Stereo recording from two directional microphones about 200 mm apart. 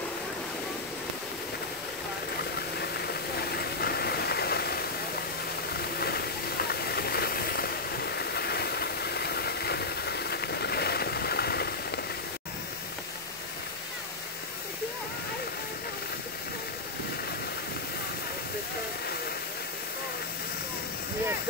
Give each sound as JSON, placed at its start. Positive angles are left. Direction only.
{"t": 3.5, "sound": "vehicle", "side_deg": 50}
{"t": 5.9, "sound": "a sound", "side_deg": 50}
{"t": 6.7, "sound": "waterfall", "side_deg": 50}